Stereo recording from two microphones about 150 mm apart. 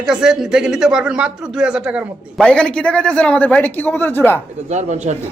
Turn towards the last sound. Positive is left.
turn(degrees=-50)  # may be behind; listen again after turning